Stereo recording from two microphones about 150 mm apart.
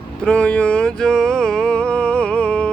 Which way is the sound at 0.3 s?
5° left (ahead or behind).